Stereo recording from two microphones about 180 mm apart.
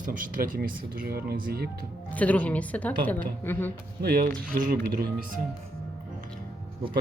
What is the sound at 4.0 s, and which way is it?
Speech, 60° right (ahead or behind).